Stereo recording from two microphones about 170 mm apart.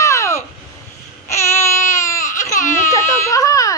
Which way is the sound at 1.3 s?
15° left (ahead or behind).